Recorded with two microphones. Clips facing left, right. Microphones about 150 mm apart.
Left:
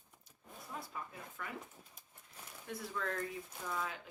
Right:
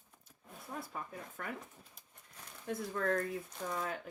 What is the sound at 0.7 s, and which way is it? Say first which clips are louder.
Speech: right 3 dB; 50° right (ahead or behind).